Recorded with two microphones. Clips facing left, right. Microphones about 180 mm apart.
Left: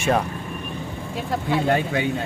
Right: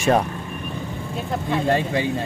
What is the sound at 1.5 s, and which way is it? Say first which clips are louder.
Speech: even; centre (ahead or behind).